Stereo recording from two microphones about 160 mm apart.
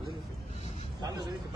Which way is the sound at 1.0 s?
25° right (ahead or behind).